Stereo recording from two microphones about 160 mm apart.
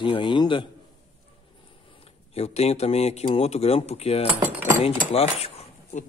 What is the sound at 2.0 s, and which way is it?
Speech, 40° left (ahead or behind).